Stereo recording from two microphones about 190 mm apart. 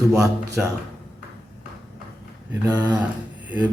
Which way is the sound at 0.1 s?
15° right (ahead or behind).